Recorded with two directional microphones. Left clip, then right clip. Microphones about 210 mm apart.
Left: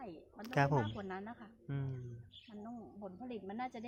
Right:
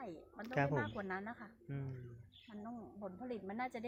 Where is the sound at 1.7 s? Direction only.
20° left (ahead or behind).